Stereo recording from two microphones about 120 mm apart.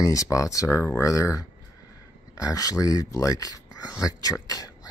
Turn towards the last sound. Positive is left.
turn(degrees=30)  # may be behind; listen again after turning